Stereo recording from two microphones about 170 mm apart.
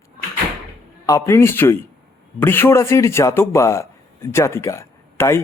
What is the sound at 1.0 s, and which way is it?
A man's voice, 20° left (ahead or behind).